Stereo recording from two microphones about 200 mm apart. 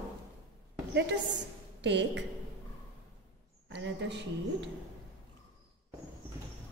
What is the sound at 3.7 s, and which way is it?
Speech, 65° right (ahead or behind).